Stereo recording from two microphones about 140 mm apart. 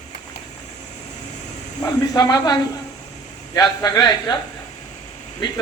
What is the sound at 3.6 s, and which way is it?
Speech, 25° left (ahead or behind).